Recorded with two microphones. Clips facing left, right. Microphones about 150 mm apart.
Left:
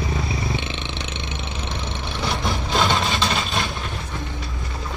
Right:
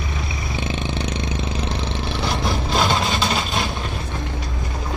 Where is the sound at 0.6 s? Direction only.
40° right (ahead or behind).